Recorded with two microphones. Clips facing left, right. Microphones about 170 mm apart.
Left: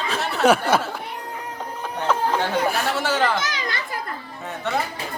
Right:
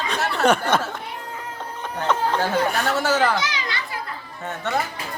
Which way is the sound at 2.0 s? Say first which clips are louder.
Even; 5° left (ahead or behind).